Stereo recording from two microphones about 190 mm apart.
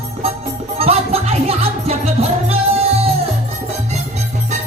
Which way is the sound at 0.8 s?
30° right (ahead or behind).